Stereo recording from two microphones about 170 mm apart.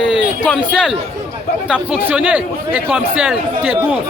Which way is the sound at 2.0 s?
5° right (ahead or behind).